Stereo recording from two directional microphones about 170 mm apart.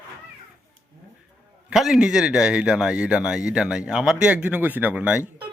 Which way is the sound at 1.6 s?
Centre (ahead or behind).